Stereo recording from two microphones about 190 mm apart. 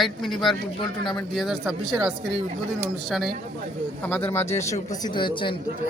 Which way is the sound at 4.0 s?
10° left (ahead or behind).